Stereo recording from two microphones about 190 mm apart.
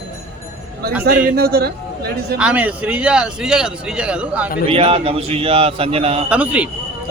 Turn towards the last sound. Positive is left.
turn(degrees=-5)  # may be behind; listen again after turning